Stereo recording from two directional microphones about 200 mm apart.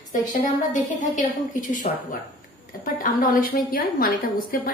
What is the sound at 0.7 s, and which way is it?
A woman's voice, 40° left (ahead or behind).